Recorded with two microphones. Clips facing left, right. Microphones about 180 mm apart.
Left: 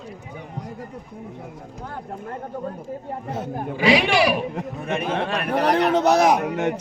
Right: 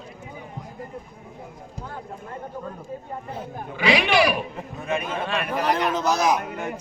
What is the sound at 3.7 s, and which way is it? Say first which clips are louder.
Speech: left 3 dB; 35° left (ahead or behind).